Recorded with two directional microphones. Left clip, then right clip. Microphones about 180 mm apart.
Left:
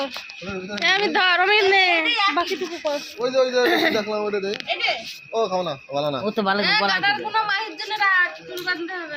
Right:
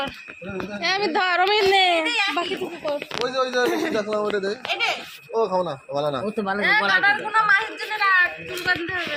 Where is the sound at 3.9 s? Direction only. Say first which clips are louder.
Even; 20° right (ahead or behind).